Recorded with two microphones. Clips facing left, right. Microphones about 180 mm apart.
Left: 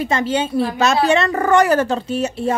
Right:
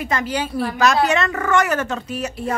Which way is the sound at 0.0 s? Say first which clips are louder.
Left 4 dB; 25° left (ahead or behind).